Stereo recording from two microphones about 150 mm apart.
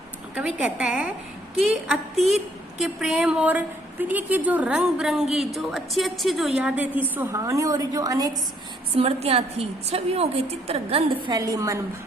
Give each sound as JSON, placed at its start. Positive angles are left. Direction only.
{"t": 0.3, "sound": "a woman's voice", "side_deg": -10}
{"t": 9.0, "sound": "a woman's voice", "side_deg": -40}
{"t": 11.3, "sound": "a woman's voice", "side_deg": -20}